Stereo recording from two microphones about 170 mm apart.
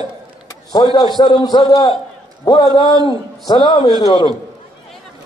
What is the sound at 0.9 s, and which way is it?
A man's voice, 25° left (ahead or behind).